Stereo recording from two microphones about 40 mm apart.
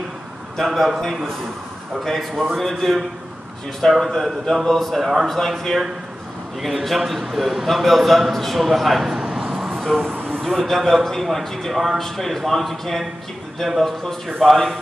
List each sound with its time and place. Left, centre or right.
0.6 s a man's voice: centre
9.6 s a sound: centre
9.8 s a man's voice: centre